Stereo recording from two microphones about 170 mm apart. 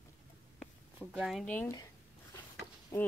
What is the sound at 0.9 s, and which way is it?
Speech, 5° right (ahead or behind).